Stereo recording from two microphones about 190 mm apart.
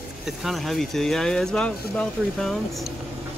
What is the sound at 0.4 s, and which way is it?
Speech, centre (ahead or behind).